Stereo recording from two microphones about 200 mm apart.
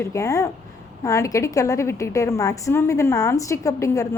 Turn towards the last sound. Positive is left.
turn(degrees=15)  # may be behind; listen again after turning